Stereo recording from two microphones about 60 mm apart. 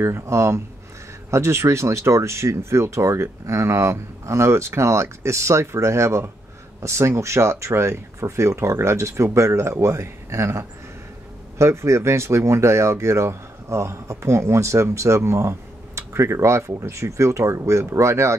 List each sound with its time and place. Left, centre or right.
0.0 s speech: right